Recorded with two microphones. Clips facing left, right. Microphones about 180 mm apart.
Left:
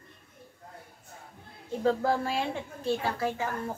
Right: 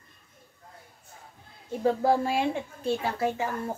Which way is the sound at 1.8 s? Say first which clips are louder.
Right 3 dB; 15° right (ahead or behind).